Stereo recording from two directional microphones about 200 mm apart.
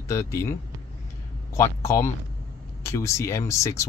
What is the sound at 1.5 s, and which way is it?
Speech, 15° left (ahead or behind).